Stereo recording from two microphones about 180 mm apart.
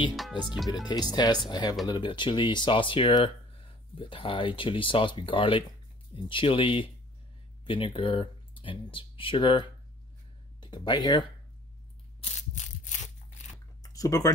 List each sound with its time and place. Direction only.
0.1 s music: centre (ahead or behind)
0.8 s speech: 25° left (ahead or behind)
12.2 s crushing: 40° left (ahead or behind)
13.9 s speech: 20° left (ahead or behind)